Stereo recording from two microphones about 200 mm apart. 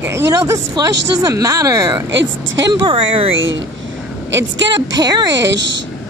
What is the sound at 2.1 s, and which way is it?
Speech, 65° right (ahead or behind).